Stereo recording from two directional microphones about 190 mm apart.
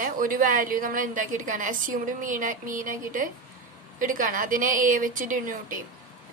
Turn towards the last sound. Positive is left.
turn(degrees=-45)  # may be behind; listen again after turning